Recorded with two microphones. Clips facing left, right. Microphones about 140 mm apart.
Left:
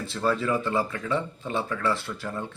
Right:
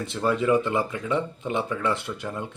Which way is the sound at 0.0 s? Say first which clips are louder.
Right 2 dB; 20° right (ahead or behind).